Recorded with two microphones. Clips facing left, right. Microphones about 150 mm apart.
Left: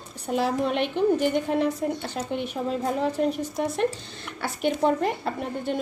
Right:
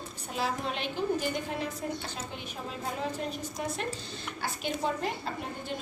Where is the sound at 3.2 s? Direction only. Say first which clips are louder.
Left 11 dB; 55° left (ahead or behind).